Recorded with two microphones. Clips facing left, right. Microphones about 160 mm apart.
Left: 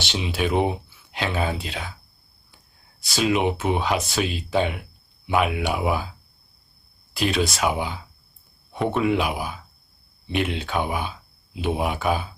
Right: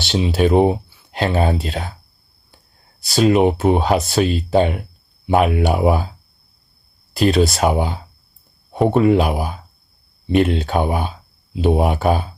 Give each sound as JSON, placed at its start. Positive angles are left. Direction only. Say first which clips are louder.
{"t": 0.0, "sound": "speech", "louder": "right 8 dB", "side_deg": -40}
{"t": 3.1, "sound": "speech", "louder": "right 8 dB", "side_deg": -40}